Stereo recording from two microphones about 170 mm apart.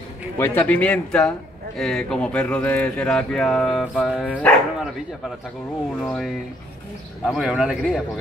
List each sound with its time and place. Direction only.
0.4 s speech: 10° left (ahead or behind)
5.9 s speech: centre (ahead or behind)